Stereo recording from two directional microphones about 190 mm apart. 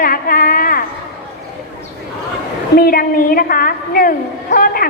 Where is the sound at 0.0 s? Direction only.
50° left (ahead or behind).